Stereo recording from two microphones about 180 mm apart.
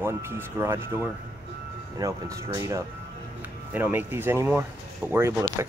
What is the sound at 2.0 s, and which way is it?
Speech, 20° right (ahead or behind).